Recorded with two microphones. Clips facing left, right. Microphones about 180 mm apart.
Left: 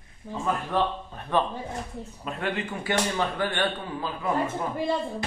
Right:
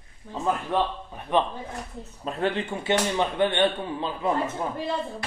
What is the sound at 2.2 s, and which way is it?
Speech, 30° right (ahead or behind).